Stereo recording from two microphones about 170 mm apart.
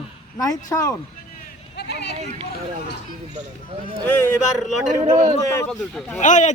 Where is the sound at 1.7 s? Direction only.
75° left (ahead or behind).